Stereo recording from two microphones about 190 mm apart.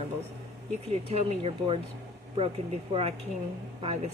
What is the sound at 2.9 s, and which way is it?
Speech, 30° right (ahead or behind).